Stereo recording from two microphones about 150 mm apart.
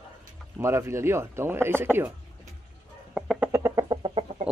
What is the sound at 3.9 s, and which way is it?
Chicken, 35° right (ahead or behind).